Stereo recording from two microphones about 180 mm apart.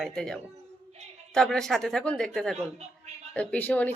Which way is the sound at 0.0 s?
5° left (ahead or behind).